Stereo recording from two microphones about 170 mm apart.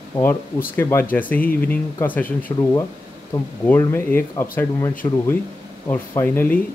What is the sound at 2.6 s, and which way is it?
Speech, 20° left (ahead or behind).